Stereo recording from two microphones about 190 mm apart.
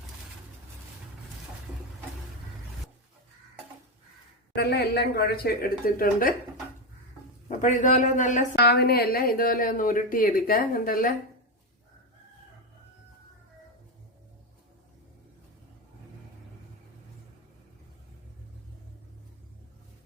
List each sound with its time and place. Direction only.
4.5 s a woman's voice: 60° left (ahead or behind)
7.4 s speech: 40° left (ahead or behind)
8.5 s a woman's voice: 55° left (ahead or behind)